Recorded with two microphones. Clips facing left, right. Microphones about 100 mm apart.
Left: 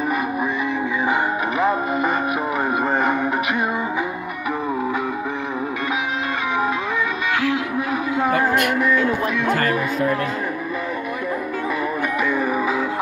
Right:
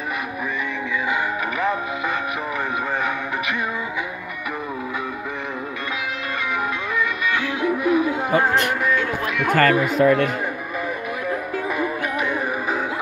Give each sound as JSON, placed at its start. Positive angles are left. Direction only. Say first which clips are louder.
{"t": 1.6, "sound": "music", "louder": "left 5 dB", "side_deg": 40}
{"t": 9.5, "sound": "speech", "louder": "right 7 dB", "side_deg": -80}